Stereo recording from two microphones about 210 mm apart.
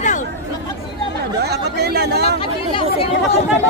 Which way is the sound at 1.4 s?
50° right (ahead or behind).